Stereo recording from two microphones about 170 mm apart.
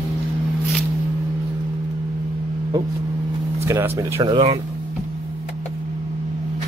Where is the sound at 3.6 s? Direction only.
15° right (ahead or behind).